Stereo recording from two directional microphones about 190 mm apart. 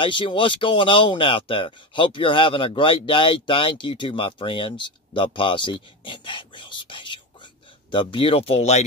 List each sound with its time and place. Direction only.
0.0 s speech: 25° left (ahead or behind)